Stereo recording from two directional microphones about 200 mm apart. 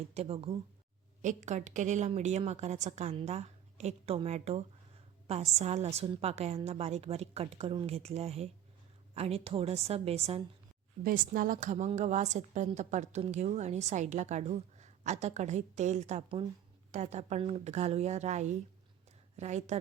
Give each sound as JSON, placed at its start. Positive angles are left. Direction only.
{"t": 0.1, "sound": "a woman's voice", "side_deg": -30}
{"t": 11.0, "sound": "a woman's voice", "side_deg": -45}